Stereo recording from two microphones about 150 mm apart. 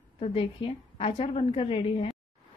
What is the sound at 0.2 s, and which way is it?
A woman's voice, 35° left (ahead or behind).